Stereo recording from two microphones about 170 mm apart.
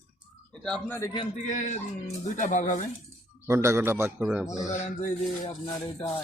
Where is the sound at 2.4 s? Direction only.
50° left (ahead or behind).